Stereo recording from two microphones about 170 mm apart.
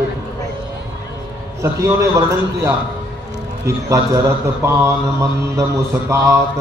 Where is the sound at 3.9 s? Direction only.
15° right (ahead or behind).